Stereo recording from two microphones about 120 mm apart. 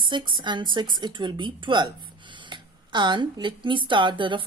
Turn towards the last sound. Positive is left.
turn(degrees=-45)  # may be behind; listen again after turning